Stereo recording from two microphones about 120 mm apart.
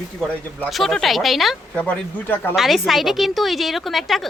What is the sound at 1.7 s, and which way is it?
Speech, 10° left (ahead or behind).